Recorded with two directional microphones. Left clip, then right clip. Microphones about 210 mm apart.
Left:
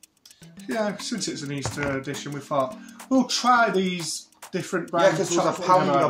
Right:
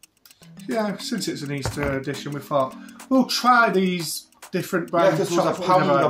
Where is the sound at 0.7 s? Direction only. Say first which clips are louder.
Right 1 dB; 10° right (ahead or behind).